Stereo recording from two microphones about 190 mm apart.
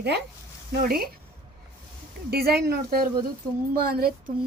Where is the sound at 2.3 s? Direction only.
55° right (ahead or behind).